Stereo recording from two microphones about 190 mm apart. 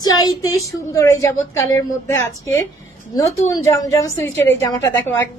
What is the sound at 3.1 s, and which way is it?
A woman's voice, 20° left (ahead or behind).